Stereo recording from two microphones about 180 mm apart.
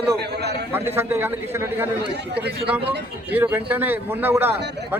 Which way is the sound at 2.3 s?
65° right (ahead or behind).